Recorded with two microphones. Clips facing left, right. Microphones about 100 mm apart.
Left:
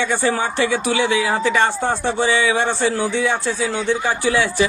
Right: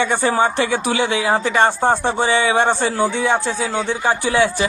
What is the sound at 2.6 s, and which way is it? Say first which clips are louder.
A man's voice: right 2 dB; 15° right (ahead or behind).